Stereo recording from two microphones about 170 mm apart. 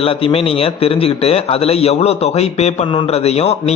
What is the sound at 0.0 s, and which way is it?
A man's voice, 35° left (ahead or behind).